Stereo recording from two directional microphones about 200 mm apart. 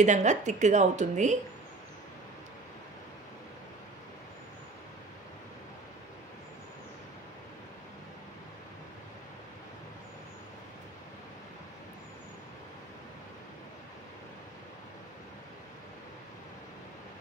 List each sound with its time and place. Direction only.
0.0 s a woman's voice: 35° right (ahead or behind)